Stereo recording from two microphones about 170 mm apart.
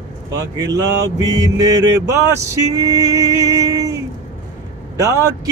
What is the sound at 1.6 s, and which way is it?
Male singing, 20° right (ahead or behind).